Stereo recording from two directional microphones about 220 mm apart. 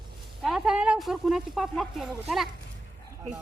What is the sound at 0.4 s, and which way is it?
Speech, centre (ahead or behind).